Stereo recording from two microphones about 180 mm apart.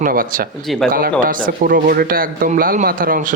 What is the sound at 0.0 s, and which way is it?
A man's voice, 50° right (ahead or behind).